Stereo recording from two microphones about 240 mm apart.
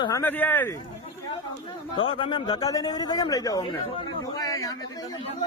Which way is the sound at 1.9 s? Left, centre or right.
Left.